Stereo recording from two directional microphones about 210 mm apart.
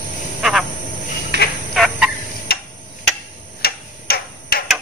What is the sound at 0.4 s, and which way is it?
Frog, centre (ahead or behind).